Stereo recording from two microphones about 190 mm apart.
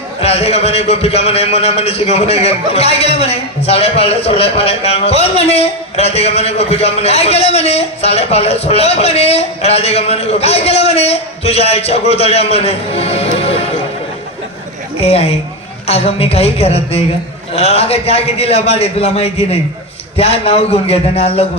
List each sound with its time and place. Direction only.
0.2 s a man's voice: 35° left (ahead or behind)
15.0 s a man's voice: 30° left (ahead or behind)